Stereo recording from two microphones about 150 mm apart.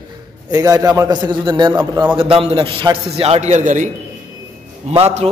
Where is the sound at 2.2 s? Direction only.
40° right (ahead or behind); by 3.9 s 55° right (ahead or behind).